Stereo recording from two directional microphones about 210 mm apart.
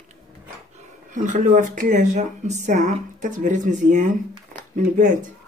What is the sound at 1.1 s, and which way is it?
Speech, 35° right (ahead or behind).